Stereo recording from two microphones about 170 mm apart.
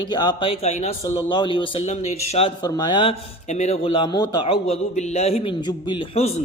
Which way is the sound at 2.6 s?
25° left (ahead or behind).